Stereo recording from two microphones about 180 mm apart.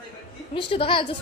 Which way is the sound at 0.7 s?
30° left (ahead or behind).